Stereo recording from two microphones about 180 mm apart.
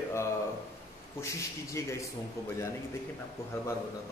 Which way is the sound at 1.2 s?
15° left (ahead or behind).